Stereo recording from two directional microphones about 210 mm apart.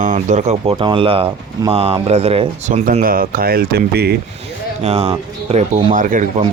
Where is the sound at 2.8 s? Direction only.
40° right (ahead or behind).